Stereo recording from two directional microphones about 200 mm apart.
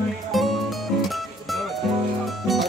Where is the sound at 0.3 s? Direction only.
Centre (ahead or behind).